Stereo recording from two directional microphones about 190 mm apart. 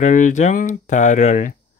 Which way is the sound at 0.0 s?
40° left (ahead or behind).